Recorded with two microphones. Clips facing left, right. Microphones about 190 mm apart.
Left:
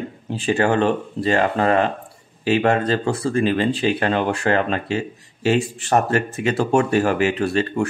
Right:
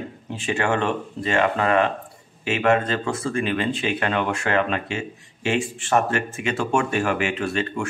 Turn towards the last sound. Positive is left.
turn(degrees=35)  # may be behind; listen again after turning